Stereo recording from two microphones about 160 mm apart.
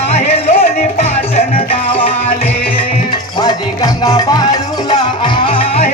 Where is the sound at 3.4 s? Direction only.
25° left (ahead or behind).